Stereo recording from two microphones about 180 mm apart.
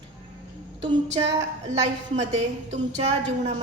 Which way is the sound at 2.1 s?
40° right (ahead or behind).